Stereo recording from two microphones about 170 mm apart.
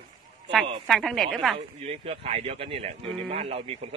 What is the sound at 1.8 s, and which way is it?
A man's voice, 40° right (ahead or behind).